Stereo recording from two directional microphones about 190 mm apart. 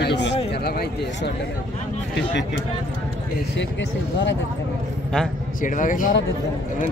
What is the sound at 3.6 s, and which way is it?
Speech, 70° left (ahead or behind).